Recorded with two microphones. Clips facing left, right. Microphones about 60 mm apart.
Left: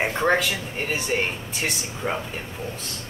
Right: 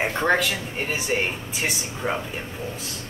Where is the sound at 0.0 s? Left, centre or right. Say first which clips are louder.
Even; centre.